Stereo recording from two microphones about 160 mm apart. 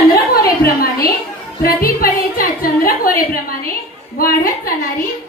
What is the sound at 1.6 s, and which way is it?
Music, 65° left (ahead or behind).